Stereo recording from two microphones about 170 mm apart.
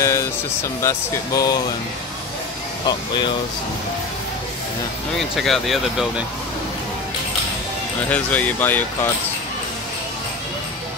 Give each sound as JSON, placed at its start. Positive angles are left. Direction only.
{"t": 0.0, "sound": "vehicle", "side_deg": 15}
{"t": 0.8, "sound": "speech", "side_deg": 20}
{"t": 2.9, "sound": "speech", "side_deg": 25}
{"t": 5.3, "sound": "speech", "side_deg": 0}
{"t": 8.1, "sound": "speech", "side_deg": 10}